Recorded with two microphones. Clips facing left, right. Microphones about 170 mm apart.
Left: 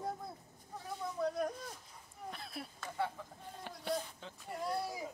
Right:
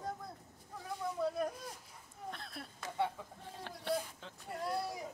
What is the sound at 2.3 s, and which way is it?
Speech, 5° left (ahead or behind).